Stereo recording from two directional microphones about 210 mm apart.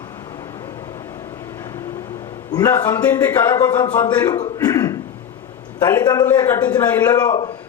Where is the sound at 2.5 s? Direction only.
15° left (ahead or behind).